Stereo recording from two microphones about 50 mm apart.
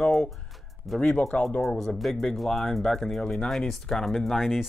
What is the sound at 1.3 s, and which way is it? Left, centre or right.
Speech, left.